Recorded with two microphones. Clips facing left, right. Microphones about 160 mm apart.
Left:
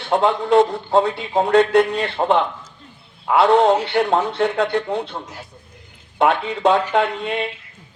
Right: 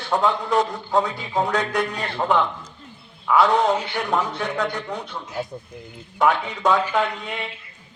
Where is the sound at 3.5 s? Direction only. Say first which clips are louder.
Left 5 dB; 60° left (ahead or behind).